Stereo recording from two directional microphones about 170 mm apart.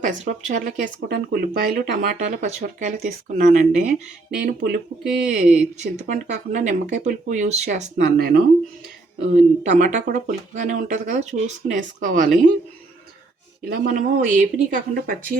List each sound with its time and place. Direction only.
0.0 s speech: 50° right (ahead or behind)
7.9 s speech: 60° right (ahead or behind)
9.2 s speech: 45° right (ahead or behind)
13.7 s speech: 60° right (ahead or behind)